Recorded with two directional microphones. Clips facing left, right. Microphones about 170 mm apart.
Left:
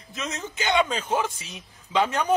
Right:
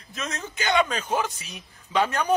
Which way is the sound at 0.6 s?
20° left (ahead or behind).